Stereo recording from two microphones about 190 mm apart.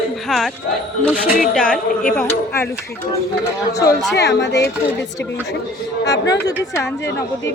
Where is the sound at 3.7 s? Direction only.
20° left (ahead or behind).